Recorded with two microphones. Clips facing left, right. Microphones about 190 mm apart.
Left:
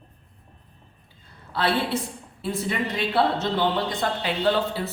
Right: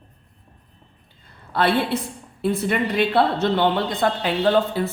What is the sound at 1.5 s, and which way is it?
A woman's voice, 55° right (ahead or behind).